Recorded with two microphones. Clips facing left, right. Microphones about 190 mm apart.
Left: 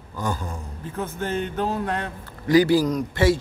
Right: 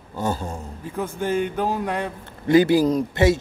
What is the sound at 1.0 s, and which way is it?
Speech, 10° right (ahead or behind).